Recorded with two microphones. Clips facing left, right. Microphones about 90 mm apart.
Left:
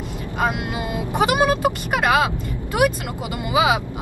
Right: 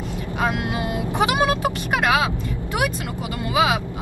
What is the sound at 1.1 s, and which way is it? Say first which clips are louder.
Speech: left 2 dB; 10° left (ahead or behind).